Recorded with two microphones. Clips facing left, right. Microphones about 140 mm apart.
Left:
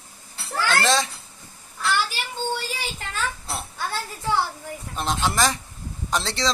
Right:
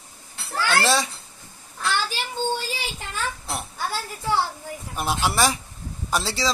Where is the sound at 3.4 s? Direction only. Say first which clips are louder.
Right 1 dB; 15° right (ahead or behind).